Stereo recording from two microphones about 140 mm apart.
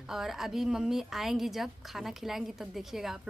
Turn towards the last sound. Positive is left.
turn(degrees=0)  # may be behind; listen again after turning